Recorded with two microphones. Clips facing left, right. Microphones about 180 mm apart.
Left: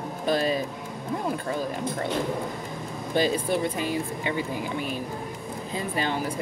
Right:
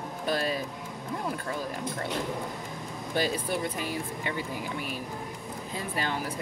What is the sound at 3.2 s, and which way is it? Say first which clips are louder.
Speech: left 5 dB; 25° left (ahead or behind).